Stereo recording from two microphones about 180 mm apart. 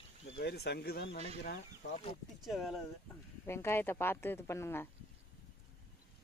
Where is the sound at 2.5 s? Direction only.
Centre (ahead or behind).